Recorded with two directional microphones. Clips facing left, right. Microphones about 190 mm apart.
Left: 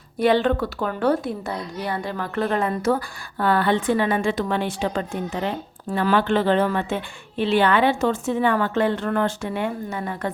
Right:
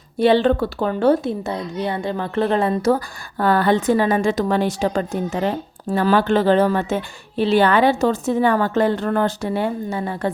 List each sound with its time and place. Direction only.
0.2 s a woman's voice: 30° right (ahead or behind)